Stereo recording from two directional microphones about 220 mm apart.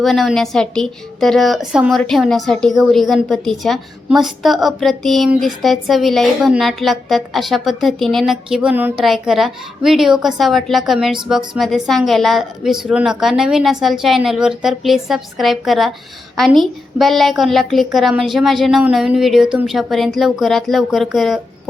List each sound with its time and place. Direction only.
0.0 s a woman's voice: centre (ahead or behind)